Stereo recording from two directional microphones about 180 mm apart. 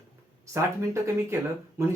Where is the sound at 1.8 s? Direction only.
15° right (ahead or behind).